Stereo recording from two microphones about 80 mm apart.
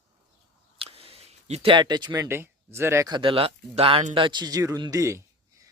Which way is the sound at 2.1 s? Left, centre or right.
Right.